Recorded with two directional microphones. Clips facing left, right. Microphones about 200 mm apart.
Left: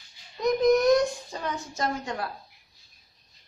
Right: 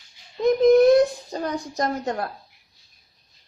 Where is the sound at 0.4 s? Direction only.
30° right (ahead or behind).